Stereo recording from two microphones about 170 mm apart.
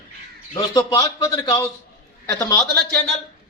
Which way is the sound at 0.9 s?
20° left (ahead or behind).